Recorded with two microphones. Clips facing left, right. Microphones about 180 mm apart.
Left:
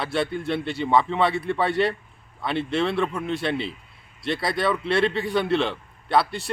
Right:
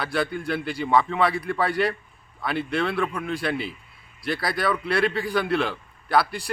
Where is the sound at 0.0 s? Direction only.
25° left (ahead or behind).